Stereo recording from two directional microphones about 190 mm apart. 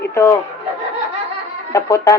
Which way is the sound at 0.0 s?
15° left (ahead or behind).